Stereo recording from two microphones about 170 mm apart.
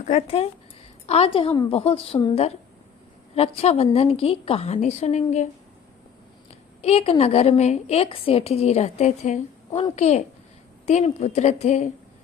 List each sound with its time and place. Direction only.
0.0 s a woman's voice: 40° left (ahead or behind)
6.5 s a woman's voice: 35° left (ahead or behind)